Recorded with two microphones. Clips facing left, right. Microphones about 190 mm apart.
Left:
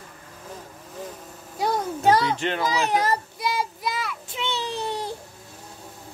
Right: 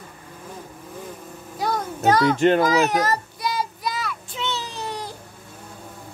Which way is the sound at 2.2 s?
50° right (ahead or behind).